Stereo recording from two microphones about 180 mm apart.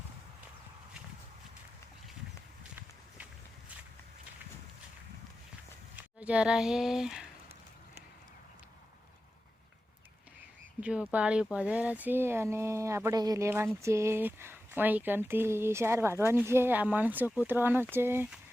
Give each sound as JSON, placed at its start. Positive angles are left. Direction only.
{"t": 6.0, "sound": "speech", "side_deg": -10}
{"t": 10.8, "sound": "speech", "side_deg": -5}